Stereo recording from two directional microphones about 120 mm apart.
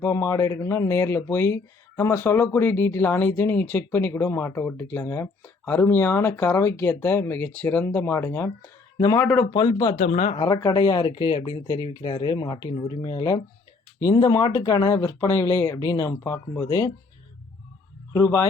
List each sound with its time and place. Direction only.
0.0 s speech: 25° left (ahead or behind)
9.5 s speech: 40° left (ahead or behind)
10.0 s speech: 70° left (ahead or behind)
10.3 s speech: 40° left (ahead or behind)
18.1 s speech: 25° left (ahead or behind)